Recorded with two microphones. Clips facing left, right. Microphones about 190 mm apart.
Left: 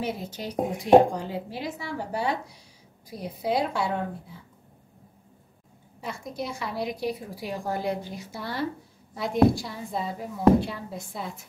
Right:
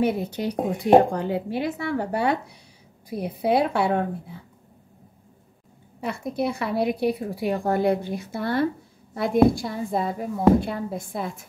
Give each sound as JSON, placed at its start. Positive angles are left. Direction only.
{"t": 0.0, "sound": "a woman's voice", "side_deg": -60}
{"t": 5.9, "sound": "a woman's voice", "side_deg": -60}